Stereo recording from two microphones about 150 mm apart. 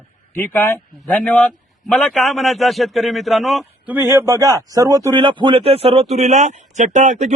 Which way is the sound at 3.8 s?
10° right (ahead or behind).